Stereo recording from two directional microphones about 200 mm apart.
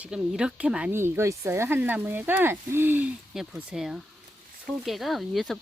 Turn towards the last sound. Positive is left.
turn(degrees=0)  # may be behind; listen again after turning